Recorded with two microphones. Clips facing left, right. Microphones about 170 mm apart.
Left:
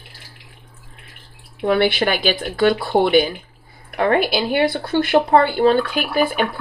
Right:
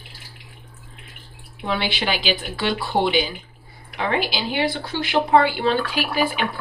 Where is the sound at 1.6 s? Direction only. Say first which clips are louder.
Left 8 dB; 50° left (ahead or behind).